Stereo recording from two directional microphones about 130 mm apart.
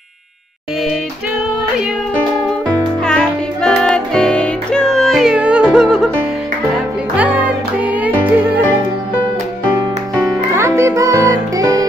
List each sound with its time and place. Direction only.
3.0 s music: 5° left (ahead or behind)
7.2 s music: 10° right (ahead or behind)
10.5 s music: 20° right (ahead or behind)